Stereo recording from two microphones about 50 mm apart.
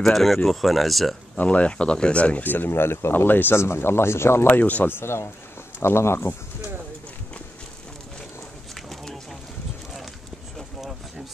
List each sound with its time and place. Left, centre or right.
0.0 s speech: centre
1.3 s speech: left
2.4 s speech: left
3.5 s speech: left
4.5 s speech: left
4.8 s speech: left